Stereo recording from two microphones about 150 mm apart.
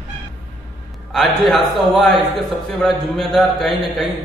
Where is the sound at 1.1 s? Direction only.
Centre (ahead or behind).